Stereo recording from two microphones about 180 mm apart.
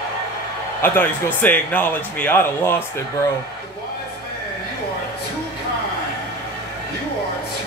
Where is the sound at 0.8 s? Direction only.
10° left (ahead or behind).